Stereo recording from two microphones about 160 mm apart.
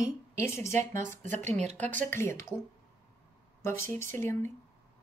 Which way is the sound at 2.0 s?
15° left (ahead or behind).